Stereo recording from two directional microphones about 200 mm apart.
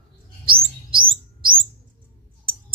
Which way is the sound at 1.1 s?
25° right (ahead or behind).